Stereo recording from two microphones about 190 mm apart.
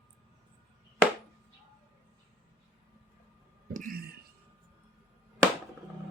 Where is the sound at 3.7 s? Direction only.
50° right (ahead or behind).